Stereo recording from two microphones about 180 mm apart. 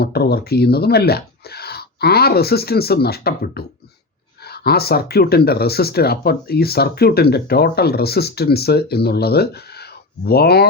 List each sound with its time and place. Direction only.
0.0 s speech: 60° left (ahead or behind)